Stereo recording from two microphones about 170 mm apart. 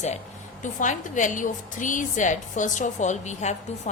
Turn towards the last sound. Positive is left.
turn(degrees=45)  # may be behind; listen again after turning